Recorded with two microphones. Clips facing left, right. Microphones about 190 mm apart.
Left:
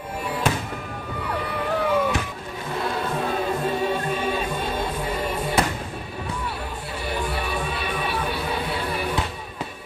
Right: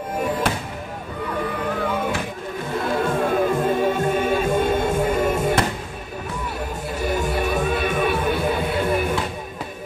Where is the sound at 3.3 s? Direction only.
50° right (ahead or behind).